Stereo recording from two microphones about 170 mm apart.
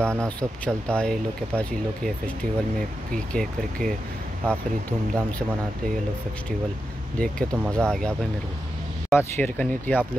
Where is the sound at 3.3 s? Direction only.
5° left (ahead or behind).